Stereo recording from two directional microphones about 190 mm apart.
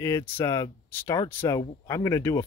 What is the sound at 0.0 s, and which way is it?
Speech, 15° left (ahead or behind).